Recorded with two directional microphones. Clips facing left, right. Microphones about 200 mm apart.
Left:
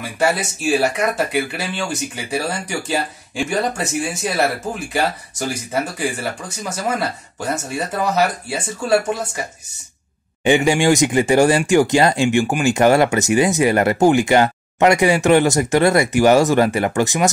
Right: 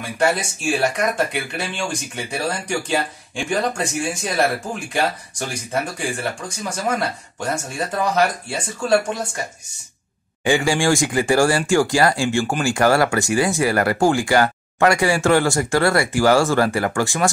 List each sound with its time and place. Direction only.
0.2 s speech: 5° left (ahead or behind)
5.5 s speech: 5° left (ahead or behind)
10.4 s speech: 20° left (ahead or behind)